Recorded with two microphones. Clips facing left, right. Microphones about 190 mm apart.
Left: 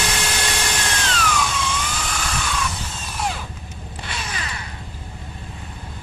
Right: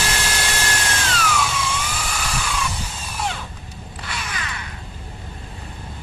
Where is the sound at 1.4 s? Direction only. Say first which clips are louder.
Even; 5° right (ahead or behind).